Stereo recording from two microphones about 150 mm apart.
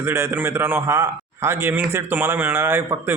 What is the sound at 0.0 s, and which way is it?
A man's voice, 15° right (ahead or behind).